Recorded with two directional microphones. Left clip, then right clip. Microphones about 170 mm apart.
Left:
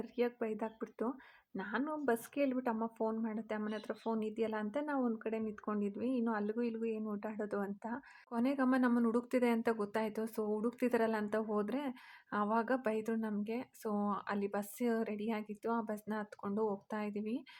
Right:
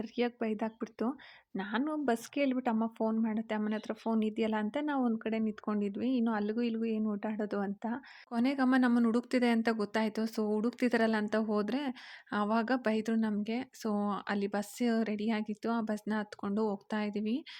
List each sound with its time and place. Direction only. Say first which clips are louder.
0.0 s speech: right 3 dB; 35° right (ahead or behind)